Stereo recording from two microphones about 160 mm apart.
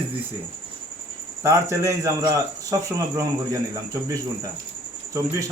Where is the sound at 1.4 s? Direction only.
15° right (ahead or behind).